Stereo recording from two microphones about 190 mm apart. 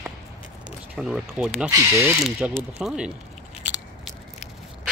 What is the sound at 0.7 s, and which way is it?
Speech, centre (ahead or behind).